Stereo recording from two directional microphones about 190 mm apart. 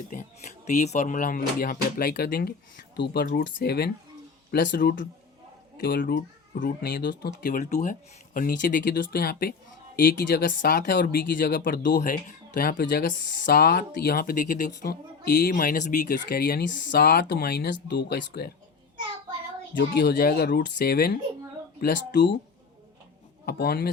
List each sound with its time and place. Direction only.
0.1 s speech: 40° left (ahead or behind); by 3.9 s 60° left (ahead or behind)
4.8 s speech: 45° left (ahead or behind); by 7.3 s 65° left (ahead or behind)
7.4 s speech: 40° left (ahead or behind)
14.8 s speech: 55° left (ahead or behind)
19.7 s speech: 65° left (ahead or behind)
23.5 s speech: 55° left (ahead or behind)